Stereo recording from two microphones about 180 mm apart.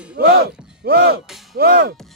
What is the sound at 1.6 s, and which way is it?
Music, 60° right (ahead or behind).